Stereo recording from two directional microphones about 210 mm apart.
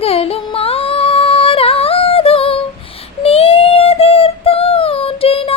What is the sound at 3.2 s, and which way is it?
Child singing, 30° left (ahead or behind).